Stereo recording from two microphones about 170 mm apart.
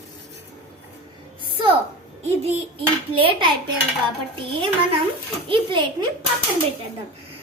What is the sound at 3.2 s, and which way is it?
Speech, 30° right (ahead or behind).